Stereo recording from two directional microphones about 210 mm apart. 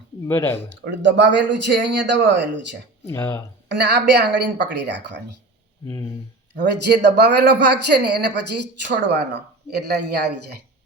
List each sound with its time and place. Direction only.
0.3 s speech: 10° left (ahead or behind)
0.9 s speech: 60° right (ahead or behind)
3.1 s speech: 15° left (ahead or behind)
3.7 s speech: 55° right (ahead or behind)
6.6 s speech: 55° right (ahead or behind)